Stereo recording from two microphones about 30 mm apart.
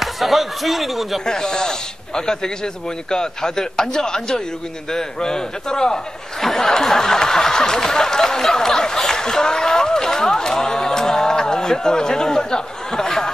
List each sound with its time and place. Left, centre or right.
0.0 s speech: centre
1.2 s speech: left
6.4 s a sound: centre
7.8 s speech: centre